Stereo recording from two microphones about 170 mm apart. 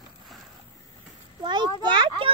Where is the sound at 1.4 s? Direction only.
25° right (ahead or behind).